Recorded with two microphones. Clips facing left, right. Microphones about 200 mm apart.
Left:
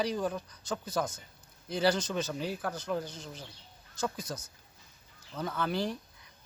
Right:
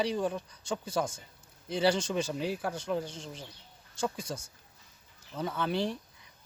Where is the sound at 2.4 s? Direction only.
5° right (ahead or behind).